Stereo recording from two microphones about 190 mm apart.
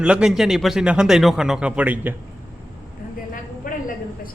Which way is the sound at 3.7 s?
45° left (ahead or behind).